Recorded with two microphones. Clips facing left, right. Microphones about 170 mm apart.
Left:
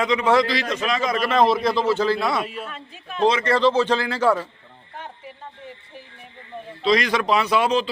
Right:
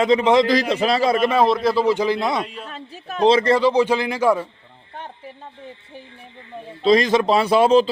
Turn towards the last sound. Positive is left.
turn(degrees=-30)  # may be behind; listen again after turning